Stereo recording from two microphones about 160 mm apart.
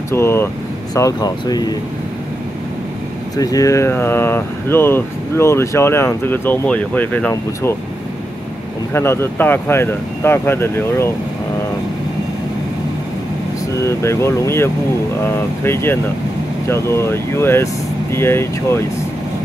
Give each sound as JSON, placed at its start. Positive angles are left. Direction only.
{"t": 0.1, "sound": "speech", "side_deg": 15}
{"t": 3.3, "sound": "speech", "side_deg": 20}
{"t": 8.9, "sound": "speech", "side_deg": 15}
{"t": 13.7, "sound": "speech", "side_deg": 15}